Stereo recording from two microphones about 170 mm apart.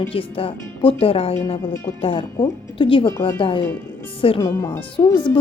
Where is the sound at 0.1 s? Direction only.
35° left (ahead or behind).